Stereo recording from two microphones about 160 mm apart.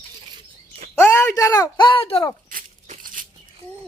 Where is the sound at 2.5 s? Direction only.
60° right (ahead or behind).